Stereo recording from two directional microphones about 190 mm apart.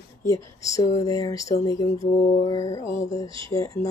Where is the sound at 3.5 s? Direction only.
15° left (ahead or behind).